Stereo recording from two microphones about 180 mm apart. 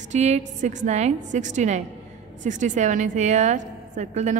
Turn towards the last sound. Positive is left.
turn(degrees=-40)  # may be behind; listen again after turning